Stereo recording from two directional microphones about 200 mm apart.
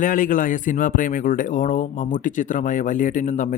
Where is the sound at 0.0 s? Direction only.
40° left (ahead or behind).